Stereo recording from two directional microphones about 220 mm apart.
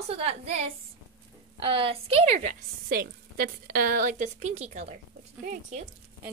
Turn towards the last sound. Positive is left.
turn(degrees=-35)  # may be behind; listen again after turning